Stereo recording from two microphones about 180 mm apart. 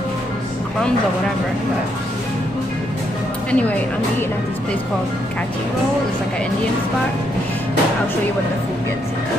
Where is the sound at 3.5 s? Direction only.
10° left (ahead or behind).